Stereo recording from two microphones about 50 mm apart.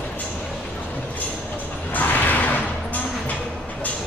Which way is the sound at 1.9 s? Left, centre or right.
Left.